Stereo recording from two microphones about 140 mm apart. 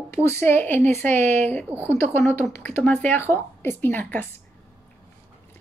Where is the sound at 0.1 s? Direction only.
20° left (ahead or behind).